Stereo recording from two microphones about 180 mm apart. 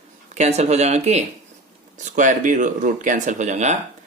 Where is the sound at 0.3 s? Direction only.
40° right (ahead or behind).